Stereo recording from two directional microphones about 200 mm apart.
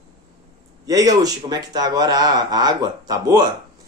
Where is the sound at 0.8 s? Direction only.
15° right (ahead or behind).